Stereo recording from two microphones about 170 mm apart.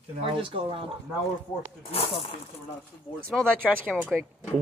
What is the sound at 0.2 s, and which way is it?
Speech, 30° right (ahead or behind).